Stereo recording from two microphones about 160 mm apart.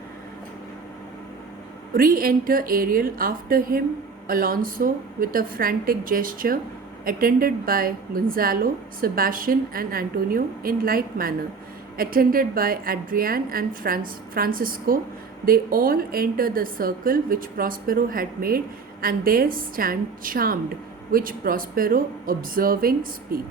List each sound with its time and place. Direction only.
1.9 s a woman's voice: 65° right (ahead or behind)